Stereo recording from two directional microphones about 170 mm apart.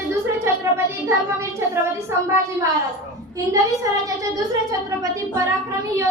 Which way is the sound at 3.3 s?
20° right (ahead or behind).